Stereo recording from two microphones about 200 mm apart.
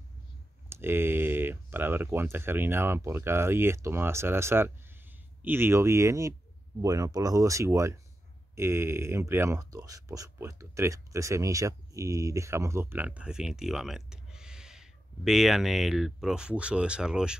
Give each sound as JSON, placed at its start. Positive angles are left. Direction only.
{"t": 0.7, "sound": "speech", "side_deg": -10}